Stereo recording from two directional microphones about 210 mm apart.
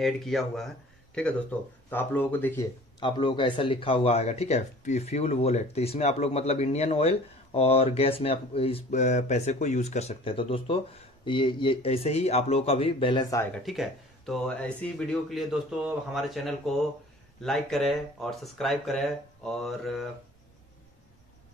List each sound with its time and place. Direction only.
0.0 s speech: centre (ahead or behind)
3.0 s speech: 20° left (ahead or behind)
13.6 s speech: centre (ahead or behind)